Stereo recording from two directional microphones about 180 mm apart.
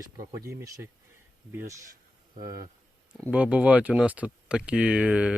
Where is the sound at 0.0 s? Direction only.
15° right (ahead or behind).